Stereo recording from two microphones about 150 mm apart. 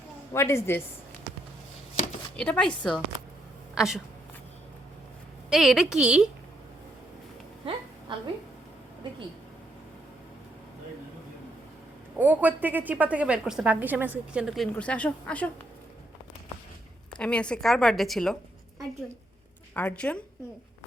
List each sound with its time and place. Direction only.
0.3 s speech: 20° left (ahead or behind)
2.3 s a woman's voice: 5° left (ahead or behind)
5.5 s a woman's voice: 5° right (ahead or behind)
8.1 s speech: 30° right (ahead or behind)
12.1 s a woman's voice: 10° right (ahead or behind); by 15.4 s 10° left (ahead or behind)
17.2 s a woman's voice: 5° left (ahead or behind)
19.7 s speech: 10° left (ahead or behind)